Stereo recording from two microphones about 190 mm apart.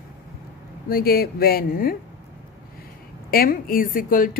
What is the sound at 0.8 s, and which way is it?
A woman's voice, 50° left (ahead or behind).